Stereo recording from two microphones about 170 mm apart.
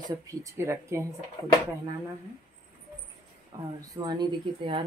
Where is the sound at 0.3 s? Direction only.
20° right (ahead or behind).